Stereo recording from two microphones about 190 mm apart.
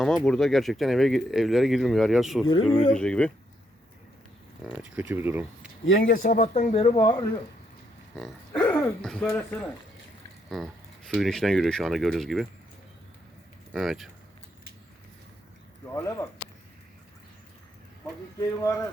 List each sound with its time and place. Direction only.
0.0 s speech: centre (ahead or behind)
4.6 s speech: 5° right (ahead or behind)
5.8 s speech: 80° left
6.2 s speech: 40° left (ahead or behind)
8.1 s a sound: centre (ahead or behind)
8.6 s speech: 10° left (ahead or behind)
13.7 s speech: centre (ahead or behind)
15.9 s speech: 15° left (ahead or behind)
18.6 s speech: 15° left (ahead or behind)